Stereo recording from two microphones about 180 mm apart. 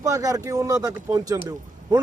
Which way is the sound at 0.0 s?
20° right (ahead or behind).